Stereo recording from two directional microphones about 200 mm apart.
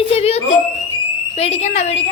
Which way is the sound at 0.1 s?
30° left (ahead or behind).